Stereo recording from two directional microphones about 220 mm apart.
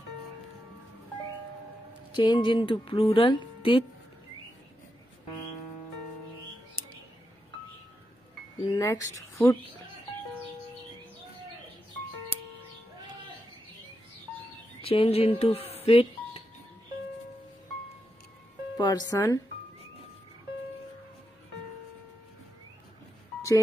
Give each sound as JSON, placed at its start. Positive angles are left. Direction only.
{"t": 2.1, "sound": "speech", "side_deg": 20}
{"t": 8.7, "sound": "a woman's voice", "side_deg": 15}
{"t": 14.8, "sound": "speech", "side_deg": 25}
{"t": 18.8, "sound": "speech", "side_deg": 20}